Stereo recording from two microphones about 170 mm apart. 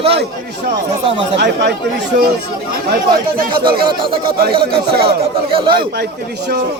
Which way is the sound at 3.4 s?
60° right (ahead or behind).